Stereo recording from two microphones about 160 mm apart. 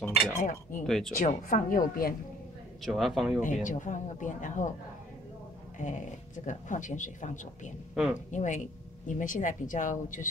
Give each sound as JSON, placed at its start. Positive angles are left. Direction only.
{"t": 0.4, "sound": "a woman's voice", "side_deg": 55}
{"t": 0.8, "sound": "speech", "side_deg": 0}
{"t": 1.1, "sound": "a woman's voice", "side_deg": 50}
{"t": 2.8, "sound": "speech", "side_deg": 0}
{"t": 3.6, "sound": "speech", "side_deg": 50}
{"t": 5.8, "sound": "speech", "side_deg": 50}
{"t": 7.9, "sound": "speech", "side_deg": -5}
{"t": 8.3, "sound": "speech", "side_deg": 50}